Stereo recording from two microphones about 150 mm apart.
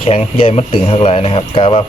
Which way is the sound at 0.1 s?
40° left (ahead or behind).